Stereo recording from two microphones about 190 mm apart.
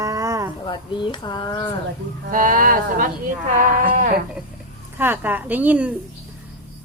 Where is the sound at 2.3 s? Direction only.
45° right (ahead or behind).